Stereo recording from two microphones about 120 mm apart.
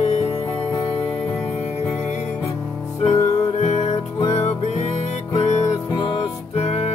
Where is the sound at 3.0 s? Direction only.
65° left (ahead or behind).